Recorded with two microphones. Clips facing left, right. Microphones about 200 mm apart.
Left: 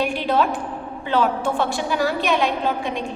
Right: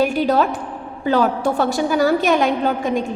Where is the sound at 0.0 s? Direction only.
40° right (ahead or behind).